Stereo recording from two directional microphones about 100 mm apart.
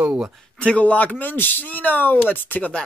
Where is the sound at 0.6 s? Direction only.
15° left (ahead or behind).